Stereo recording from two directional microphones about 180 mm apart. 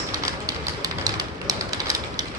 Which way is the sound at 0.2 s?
20° right (ahead or behind).